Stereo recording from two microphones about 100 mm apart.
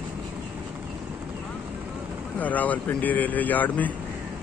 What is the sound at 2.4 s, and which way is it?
Speech, 15° left (ahead or behind).